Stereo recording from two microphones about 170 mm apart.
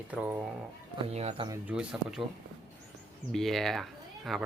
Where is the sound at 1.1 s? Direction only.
40° right (ahead or behind).